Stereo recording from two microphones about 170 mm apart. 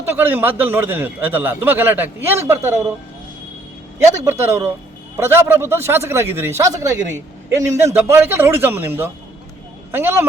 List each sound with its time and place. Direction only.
0.0 s a man's voice: 10° right (ahead or behind)
4.2 s a man's voice: 15° right (ahead or behind)